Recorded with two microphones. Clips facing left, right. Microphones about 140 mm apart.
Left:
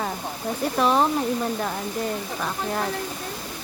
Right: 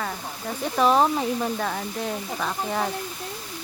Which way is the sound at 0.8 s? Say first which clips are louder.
Right 2 dB; centre (ahead or behind).